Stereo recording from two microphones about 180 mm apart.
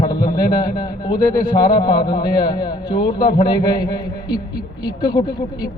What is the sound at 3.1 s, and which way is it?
Speech, 60° left (ahead or behind).